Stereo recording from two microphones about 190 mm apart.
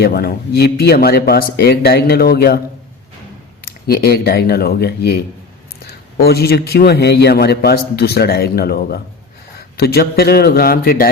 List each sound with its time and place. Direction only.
0.0 s a man's voice: 55° left (ahead or behind)
3.6 s a man's voice: 55° left (ahead or behind)